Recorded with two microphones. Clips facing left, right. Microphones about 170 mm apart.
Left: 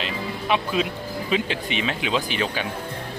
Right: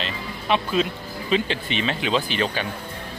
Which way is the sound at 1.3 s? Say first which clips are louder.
Right 2 dB; 10° left (ahead or behind).